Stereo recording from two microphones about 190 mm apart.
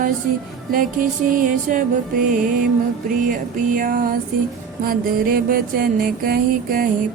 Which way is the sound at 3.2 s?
45° right (ahead or behind).